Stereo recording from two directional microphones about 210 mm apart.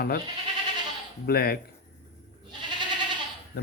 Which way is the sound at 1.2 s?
45° left (ahead or behind).